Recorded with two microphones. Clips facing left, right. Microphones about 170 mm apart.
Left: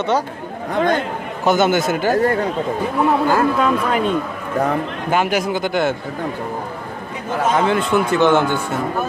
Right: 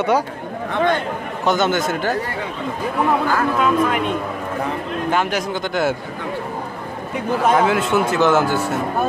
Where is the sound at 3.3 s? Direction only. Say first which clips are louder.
Left 1 dB; 35° left (ahead or behind).